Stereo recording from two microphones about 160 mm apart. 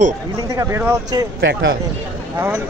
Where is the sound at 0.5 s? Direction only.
20° right (ahead or behind).